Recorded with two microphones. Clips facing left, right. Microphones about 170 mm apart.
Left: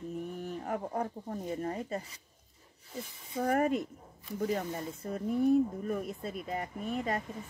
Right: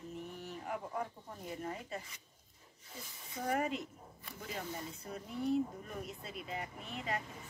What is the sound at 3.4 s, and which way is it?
Speech, 50° left (ahead or behind).